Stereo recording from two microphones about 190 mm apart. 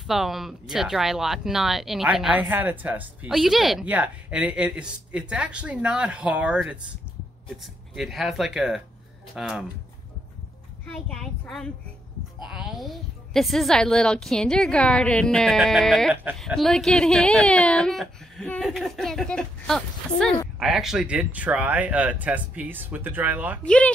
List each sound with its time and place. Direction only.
0.0 s speech: centre (ahead or behind)
10.9 s speech: 5° left (ahead or behind)
23.6 s speech: 5° left (ahead or behind)